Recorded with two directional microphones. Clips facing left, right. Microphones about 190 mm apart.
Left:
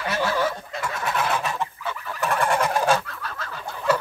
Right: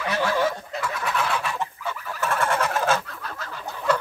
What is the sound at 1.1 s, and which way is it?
Fowl, 45° left (ahead or behind).